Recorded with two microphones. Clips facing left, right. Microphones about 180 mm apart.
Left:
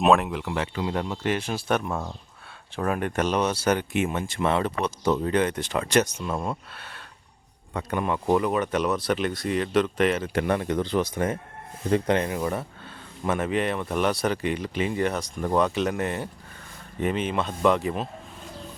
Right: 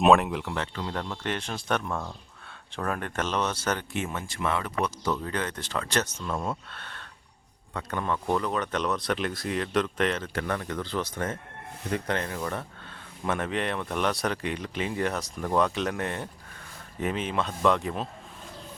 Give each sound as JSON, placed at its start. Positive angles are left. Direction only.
{"t": 0.0, "sound": "speech", "side_deg": 0}
{"t": 10.3, "sound": "speech", "side_deg": 20}
{"t": 13.2, "sound": "speech", "side_deg": 5}